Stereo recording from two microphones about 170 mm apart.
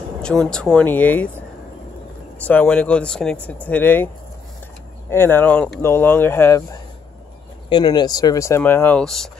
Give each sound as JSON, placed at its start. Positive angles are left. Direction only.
{"t": 0.5, "sound": "speech", "side_deg": 5}
{"t": 2.3, "sound": "speech", "side_deg": 10}
{"t": 5.1, "sound": "speech", "side_deg": 15}